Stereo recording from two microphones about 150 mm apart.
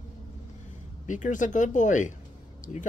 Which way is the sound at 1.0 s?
55° left (ahead or behind).